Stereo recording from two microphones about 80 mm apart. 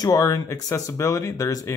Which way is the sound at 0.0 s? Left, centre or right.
Left.